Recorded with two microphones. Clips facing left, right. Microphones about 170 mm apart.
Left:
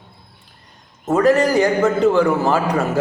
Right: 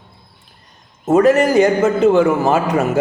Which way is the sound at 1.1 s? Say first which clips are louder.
Right 3 dB; 20° right (ahead or behind).